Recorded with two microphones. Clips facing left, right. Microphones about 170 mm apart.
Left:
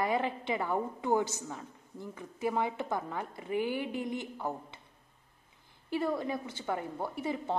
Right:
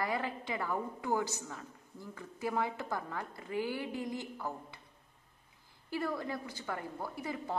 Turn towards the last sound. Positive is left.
turn(degrees=25)  # may be behind; listen again after turning